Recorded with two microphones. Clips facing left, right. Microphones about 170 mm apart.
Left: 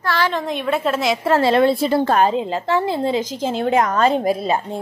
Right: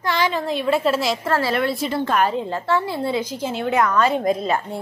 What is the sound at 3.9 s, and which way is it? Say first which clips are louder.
Speech: left 2 dB; 40° left (ahead or behind).